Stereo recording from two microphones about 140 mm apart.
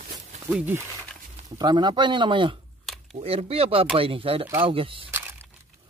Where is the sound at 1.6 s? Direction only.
30° right (ahead or behind).